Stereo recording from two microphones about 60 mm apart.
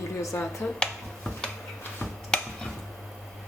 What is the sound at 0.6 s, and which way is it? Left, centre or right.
Finger snapping, centre.